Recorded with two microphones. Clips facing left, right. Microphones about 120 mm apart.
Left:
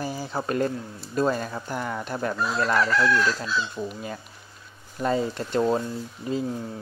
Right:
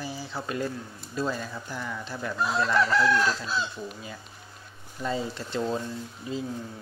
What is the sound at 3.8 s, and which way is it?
Speech, 40° left (ahead or behind).